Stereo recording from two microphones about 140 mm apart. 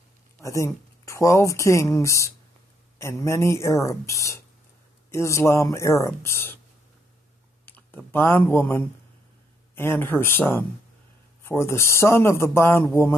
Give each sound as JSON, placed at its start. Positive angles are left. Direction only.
{"t": 0.4, "sound": "speech", "side_deg": 20}
{"t": 7.6, "sound": "speech", "side_deg": 15}